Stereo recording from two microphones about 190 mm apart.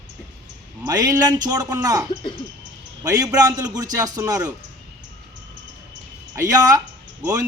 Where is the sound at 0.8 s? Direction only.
20° right (ahead or behind).